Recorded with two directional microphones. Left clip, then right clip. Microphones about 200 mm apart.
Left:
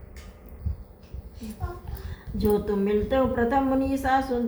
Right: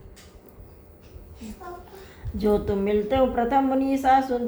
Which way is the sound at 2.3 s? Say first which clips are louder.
Right 1 dB; 35° right (ahead or behind).